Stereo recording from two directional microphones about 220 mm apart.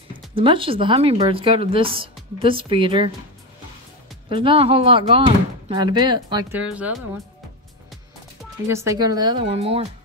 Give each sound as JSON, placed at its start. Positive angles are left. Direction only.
{"t": 0.3, "sound": "speech", "side_deg": -25}
{"t": 4.3, "sound": "speech", "side_deg": -25}
{"t": 6.5, "sound": "speech", "side_deg": -5}
{"t": 8.6, "sound": "speech", "side_deg": -10}